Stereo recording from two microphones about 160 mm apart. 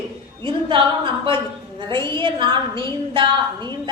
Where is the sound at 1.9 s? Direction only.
30° right (ahead or behind).